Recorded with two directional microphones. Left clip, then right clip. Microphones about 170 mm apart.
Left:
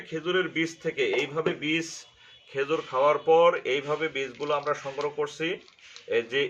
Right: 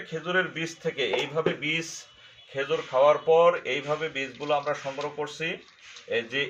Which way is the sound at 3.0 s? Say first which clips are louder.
Right 1 dB; 25° left (ahead or behind).